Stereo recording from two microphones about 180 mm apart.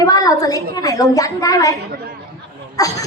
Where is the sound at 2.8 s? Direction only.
20° left (ahead or behind).